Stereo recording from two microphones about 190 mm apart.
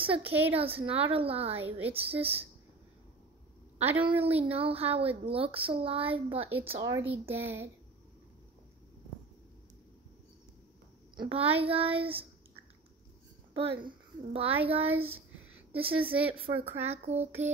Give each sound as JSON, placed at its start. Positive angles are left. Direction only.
{"t": 0.2, "sound": "a woman's voice", "side_deg": -10}
{"t": 0.6, "sound": "speech", "side_deg": -30}
{"t": 1.5, "sound": "a woman's voice", "side_deg": -10}
{"t": 1.9, "sound": "speech", "side_deg": -30}
{"t": 4.0, "sound": "speech", "side_deg": -30}
{"t": 7.2, "sound": "a woman's voice", "side_deg": -10}
{"t": 11.1, "sound": "speech", "side_deg": -30}
{"t": 13.5, "sound": "speech", "side_deg": -25}